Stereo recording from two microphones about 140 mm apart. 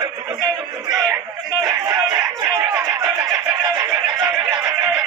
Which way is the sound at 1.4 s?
30° right (ahead or behind).